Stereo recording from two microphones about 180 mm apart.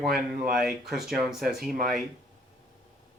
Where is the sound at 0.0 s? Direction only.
55° right (ahead or behind).